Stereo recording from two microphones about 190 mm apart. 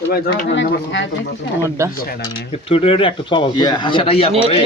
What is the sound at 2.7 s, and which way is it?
Speech, 30° left (ahead or behind).